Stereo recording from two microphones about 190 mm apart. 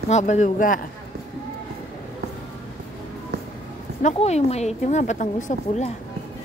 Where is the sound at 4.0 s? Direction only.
35° left (ahead or behind).